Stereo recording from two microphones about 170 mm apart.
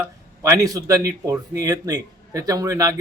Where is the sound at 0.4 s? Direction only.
20° right (ahead or behind).